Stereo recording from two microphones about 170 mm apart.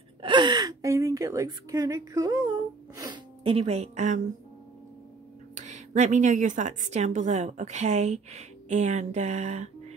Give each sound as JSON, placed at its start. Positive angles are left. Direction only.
{"t": 0.2, "sound": "a woman's voice", "side_deg": -25}
{"t": 3.0, "sound": "speech", "side_deg": -30}
{"t": 5.5, "sound": "a woman's voice", "side_deg": -45}